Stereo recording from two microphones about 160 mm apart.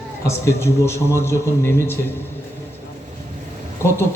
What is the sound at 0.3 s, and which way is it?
A man's voice, 15° left (ahead or behind).